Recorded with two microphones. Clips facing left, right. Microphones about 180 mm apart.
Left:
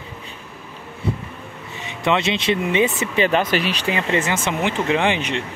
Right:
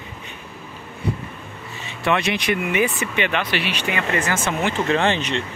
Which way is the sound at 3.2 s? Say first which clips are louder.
Left 5 dB; 40° left (ahead or behind).